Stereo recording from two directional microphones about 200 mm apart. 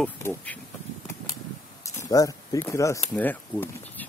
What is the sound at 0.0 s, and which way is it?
Speech, 10° left (ahead or behind).